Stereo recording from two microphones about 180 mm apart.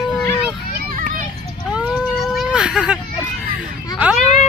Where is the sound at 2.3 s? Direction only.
5° right (ahead or behind).